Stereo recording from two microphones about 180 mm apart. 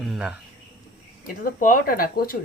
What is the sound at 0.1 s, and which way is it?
Cricket, 5° right (ahead or behind).